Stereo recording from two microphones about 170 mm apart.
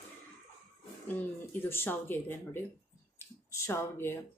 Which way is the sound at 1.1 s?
10° left (ahead or behind).